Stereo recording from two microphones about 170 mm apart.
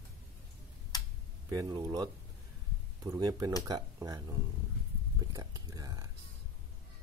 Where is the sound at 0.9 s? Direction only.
20° left (ahead or behind).